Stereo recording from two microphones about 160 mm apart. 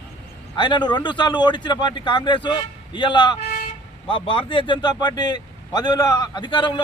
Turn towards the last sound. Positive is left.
turn(degrees=30)  # may be behind; listen again after turning